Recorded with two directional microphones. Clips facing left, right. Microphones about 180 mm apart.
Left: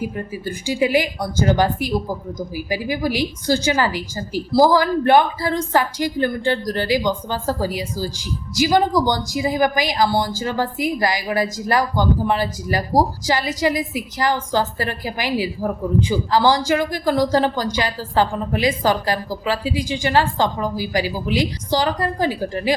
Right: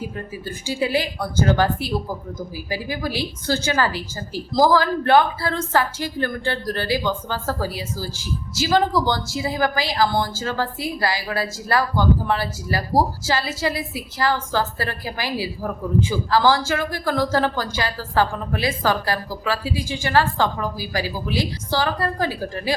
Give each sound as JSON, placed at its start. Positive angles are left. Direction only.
{"t": 0.0, "sound": "a woman's voice", "side_deg": 15}